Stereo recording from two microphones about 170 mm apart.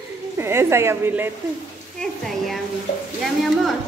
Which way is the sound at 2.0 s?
Centre (ahead or behind).